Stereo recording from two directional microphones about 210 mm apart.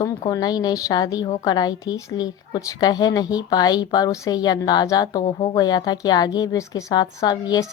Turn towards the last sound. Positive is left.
turn(degrees=20)  # may be behind; listen again after turning